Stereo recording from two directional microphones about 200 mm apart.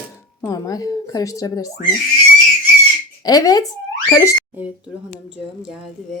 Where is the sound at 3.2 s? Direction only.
20° left (ahead or behind).